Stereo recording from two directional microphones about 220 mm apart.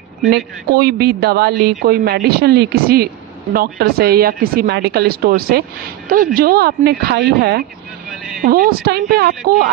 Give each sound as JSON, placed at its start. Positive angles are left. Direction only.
{"t": 0.7, "sound": "a woman's voice", "side_deg": -45}
{"t": 8.1, "sound": "a sound", "side_deg": 0}
{"t": 8.5, "sound": "a woman's voice", "side_deg": -45}